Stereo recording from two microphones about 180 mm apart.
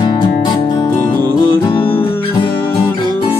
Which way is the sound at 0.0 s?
25° left (ahead or behind).